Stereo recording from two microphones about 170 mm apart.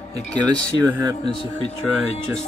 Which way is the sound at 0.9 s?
20° right (ahead or behind).